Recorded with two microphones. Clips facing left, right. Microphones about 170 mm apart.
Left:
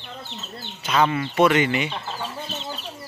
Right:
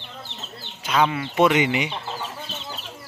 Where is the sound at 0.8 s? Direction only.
10° right (ahead or behind).